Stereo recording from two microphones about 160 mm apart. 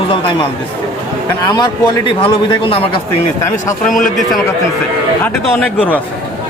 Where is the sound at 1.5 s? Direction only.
25° left (ahead or behind).